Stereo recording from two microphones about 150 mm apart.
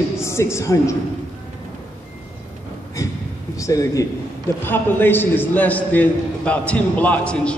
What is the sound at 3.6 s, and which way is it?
A man's voice, 20° left (ahead or behind).